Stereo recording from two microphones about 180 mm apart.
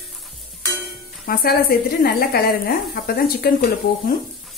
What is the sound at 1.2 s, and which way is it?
Speech, 55° left (ahead or behind).